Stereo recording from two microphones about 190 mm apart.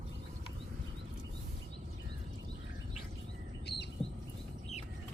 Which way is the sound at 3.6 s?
60° left (ahead or behind).